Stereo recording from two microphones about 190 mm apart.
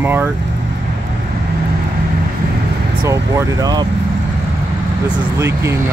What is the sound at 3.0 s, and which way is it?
Speech, 15° right (ahead or behind).